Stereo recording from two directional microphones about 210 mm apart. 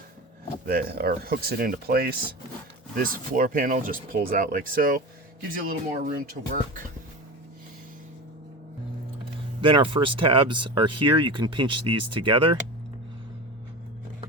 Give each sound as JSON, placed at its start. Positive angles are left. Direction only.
{"t": 0.6, "sound": "speech", "side_deg": -45}
{"t": 9.6, "sound": "speech", "side_deg": -25}